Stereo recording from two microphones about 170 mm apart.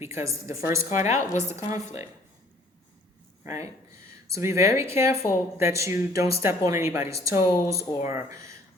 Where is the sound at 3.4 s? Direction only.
15° right (ahead or behind).